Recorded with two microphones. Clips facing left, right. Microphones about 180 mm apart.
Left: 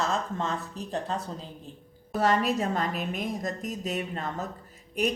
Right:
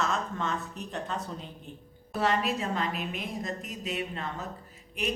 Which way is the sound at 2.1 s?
45° left (ahead or behind).